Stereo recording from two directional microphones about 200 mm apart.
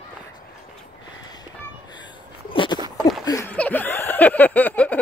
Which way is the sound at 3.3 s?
10° left (ahead or behind).